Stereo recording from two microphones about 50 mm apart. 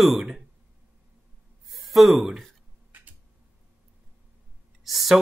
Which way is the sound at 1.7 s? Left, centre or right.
Centre.